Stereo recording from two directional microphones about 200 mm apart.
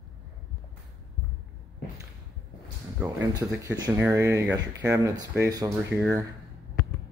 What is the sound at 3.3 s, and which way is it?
Speech, 20° right (ahead or behind).